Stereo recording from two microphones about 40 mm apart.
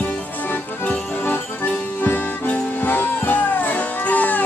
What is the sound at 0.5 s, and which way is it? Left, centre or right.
Music, left.